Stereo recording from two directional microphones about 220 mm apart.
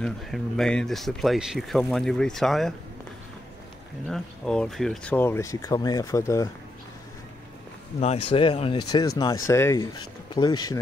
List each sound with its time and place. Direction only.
0.0 s speech: 5° left (ahead or behind)
4.1 s speech: centre (ahead or behind)
8.0 s a man's voice: 25° left (ahead or behind)
9.2 s speech: 15° left (ahead or behind)